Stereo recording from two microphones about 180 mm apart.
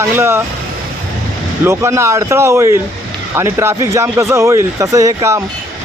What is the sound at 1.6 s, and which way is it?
A man's voice, 15° right (ahead or behind).